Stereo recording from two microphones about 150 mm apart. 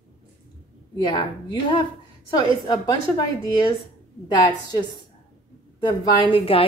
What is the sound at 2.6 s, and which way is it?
Speech, 25° left (ahead or behind).